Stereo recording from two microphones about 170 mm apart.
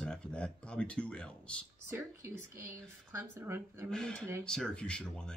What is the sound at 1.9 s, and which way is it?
Speech, 15° right (ahead or behind).